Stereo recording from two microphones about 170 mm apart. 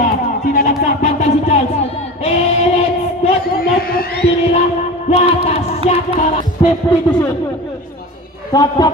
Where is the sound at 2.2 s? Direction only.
40° left (ahead or behind).